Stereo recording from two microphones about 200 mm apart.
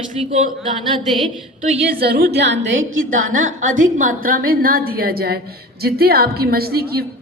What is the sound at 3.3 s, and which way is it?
A woman's voice, 40° right (ahead or behind).